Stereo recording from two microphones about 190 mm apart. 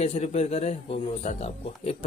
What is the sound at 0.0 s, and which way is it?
Speech, 35° left (ahead or behind).